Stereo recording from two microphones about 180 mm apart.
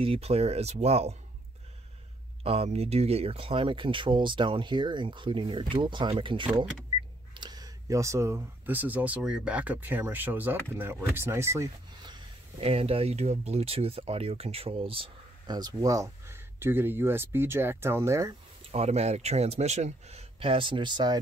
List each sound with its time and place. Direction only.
0.0 s speech: 30° right (ahead or behind)
2.4 s speech: 35° right (ahead or behind); by 18.3 s 15° right (ahead or behind)
18.7 s speech: 35° right (ahead or behind)